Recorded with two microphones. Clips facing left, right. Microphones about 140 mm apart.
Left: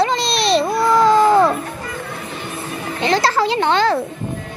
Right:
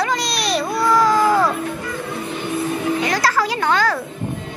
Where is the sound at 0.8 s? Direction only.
25° left (ahead or behind).